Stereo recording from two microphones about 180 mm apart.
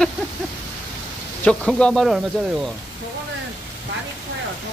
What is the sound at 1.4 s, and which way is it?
Speech, 5° left (ahead or behind).